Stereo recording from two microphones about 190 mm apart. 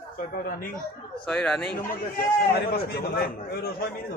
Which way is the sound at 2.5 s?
55° left (ahead or behind).